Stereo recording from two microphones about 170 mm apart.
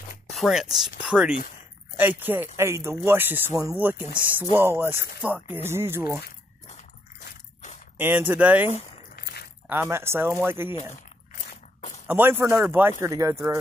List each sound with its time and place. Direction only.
0.3 s speech: centre (ahead or behind)
8.0 s speech: 10° right (ahead or behind)
9.1 s a sound: 65° left (ahead or behind)
9.7 s speech: 15° right (ahead or behind)
11.3 s biting: 45° left (ahead or behind)
12.1 s speech: 10° right (ahead or behind)